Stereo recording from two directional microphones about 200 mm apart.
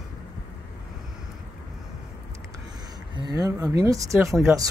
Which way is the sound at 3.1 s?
20° right (ahead or behind).